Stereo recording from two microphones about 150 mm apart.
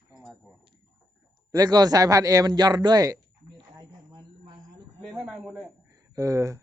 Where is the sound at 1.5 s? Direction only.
25° right (ahead or behind).